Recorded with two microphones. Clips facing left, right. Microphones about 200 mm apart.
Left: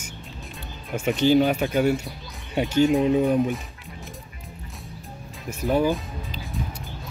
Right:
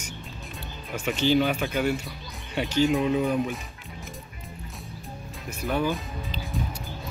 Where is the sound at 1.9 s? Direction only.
40° left (ahead or behind).